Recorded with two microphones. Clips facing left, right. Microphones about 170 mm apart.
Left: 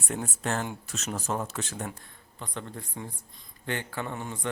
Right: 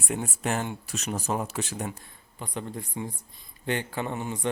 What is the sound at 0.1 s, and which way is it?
Speech, 15° right (ahead or behind).